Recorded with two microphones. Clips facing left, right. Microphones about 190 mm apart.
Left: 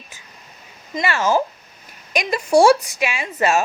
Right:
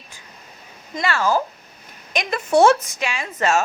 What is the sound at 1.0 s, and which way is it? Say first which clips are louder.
A woman's voice: left 1 dB; 15° left (ahead or behind).